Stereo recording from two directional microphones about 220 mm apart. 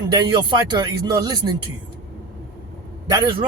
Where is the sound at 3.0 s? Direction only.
20° right (ahead or behind).